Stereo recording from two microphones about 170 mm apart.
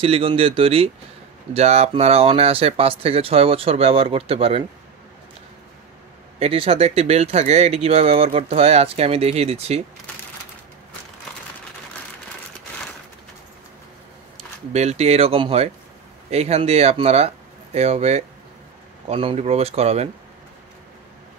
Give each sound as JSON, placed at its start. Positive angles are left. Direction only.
{"t": 0.0, "sound": "speech", "side_deg": -35}
{"t": 6.4, "sound": "speech", "side_deg": -35}
{"t": 14.7, "sound": "speech", "side_deg": -40}